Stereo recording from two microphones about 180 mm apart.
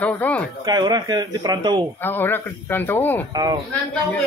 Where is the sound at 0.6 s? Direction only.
25° right (ahead or behind).